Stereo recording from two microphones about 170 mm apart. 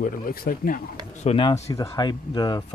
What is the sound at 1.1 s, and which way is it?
Speech, 35° left (ahead or behind).